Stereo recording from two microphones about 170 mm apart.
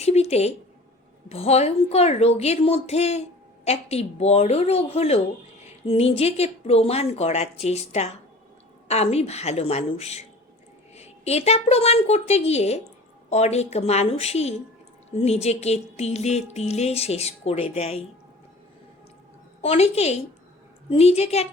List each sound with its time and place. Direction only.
0.0 s a sound: 40° left (ahead or behind)
1.3 s a woman's voice: 40° left (ahead or behind)
19.6 s a woman's voice: 40° left (ahead or behind)